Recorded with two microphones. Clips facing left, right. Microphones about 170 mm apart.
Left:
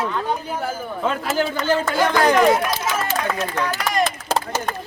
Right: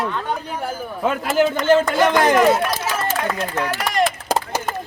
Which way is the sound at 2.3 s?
5° right (ahead or behind).